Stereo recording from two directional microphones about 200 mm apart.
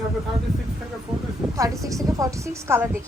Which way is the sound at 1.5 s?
15° right (ahead or behind).